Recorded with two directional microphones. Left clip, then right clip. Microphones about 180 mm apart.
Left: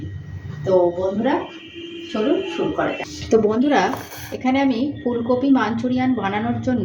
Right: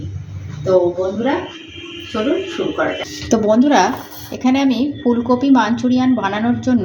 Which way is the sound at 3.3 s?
35° right (ahead or behind).